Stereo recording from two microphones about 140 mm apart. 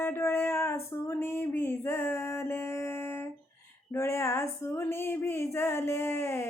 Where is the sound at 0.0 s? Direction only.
15° left (ahead or behind).